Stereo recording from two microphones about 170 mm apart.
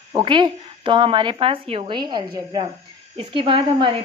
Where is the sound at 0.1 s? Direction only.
30° right (ahead or behind).